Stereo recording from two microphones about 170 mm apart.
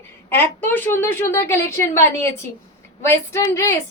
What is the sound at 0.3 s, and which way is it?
A woman's voice, 10° left (ahead or behind).